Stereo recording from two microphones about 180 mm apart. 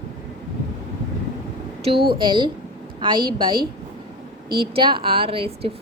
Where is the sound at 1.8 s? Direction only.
30° right (ahead or behind).